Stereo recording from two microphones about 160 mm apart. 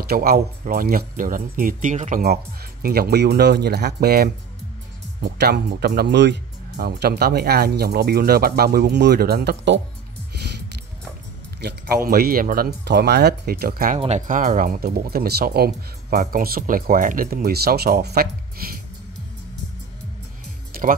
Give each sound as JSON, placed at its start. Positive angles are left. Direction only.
{"t": 0.1, "sound": "speech", "side_deg": -65}
{"t": 2.8, "sound": "speech", "side_deg": -70}
{"t": 11.6, "sound": "speech", "side_deg": -70}
{"t": 13.9, "sound": "speech", "side_deg": -45}